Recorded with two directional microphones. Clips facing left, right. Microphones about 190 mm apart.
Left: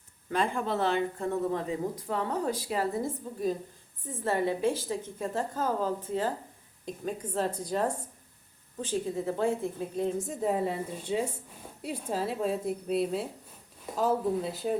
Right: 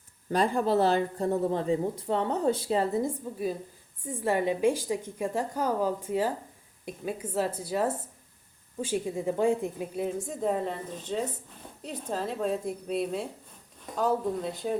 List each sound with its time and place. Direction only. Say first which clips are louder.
0.3 s speech: right 4 dB; 35° right (ahead or behind)
4.1 s a woman's voice: right 2 dB; 10° right (ahead or behind)
10.2 s a woman's voice: even; 5° left (ahead or behind)